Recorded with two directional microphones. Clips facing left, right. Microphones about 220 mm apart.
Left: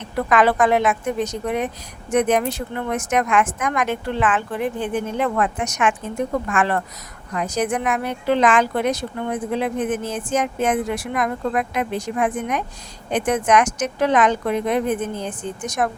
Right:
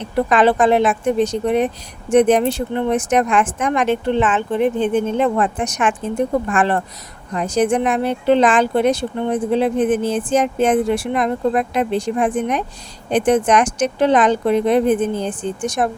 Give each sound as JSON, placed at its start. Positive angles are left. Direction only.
{"t": 0.3, "sound": "speech", "side_deg": -30}